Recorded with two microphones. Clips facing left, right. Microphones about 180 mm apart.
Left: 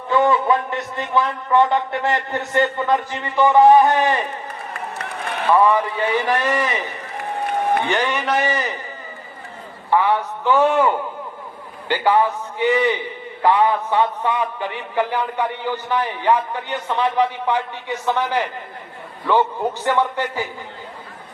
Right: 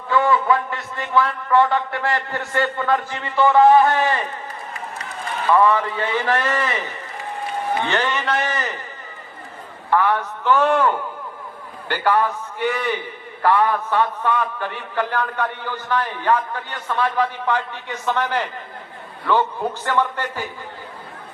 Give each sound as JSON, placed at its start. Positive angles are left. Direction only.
{"t": 0.1, "sound": "a man's voice", "side_deg": 20}
{"t": 5.0, "sound": "run", "side_deg": 65}
{"t": 5.5, "sound": "a man's voice", "side_deg": 15}
{"t": 9.9, "sound": "a man's voice", "side_deg": 15}